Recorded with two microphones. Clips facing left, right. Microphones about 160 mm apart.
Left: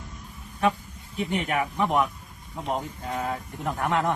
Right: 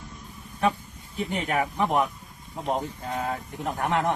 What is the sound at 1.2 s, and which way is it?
Speech, 35° right (ahead or behind).